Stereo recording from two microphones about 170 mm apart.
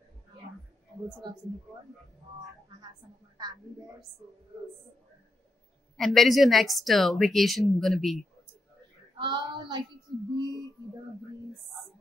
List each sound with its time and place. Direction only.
3.3 s speech: 25° right (ahead or behind)
5.9 s speech: centre (ahead or behind)
9.2 s speech: 25° right (ahead or behind)
10.3 s a sound: 25° right (ahead or behind)